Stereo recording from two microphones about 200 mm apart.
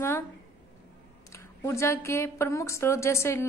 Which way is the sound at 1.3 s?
15° left (ahead or behind).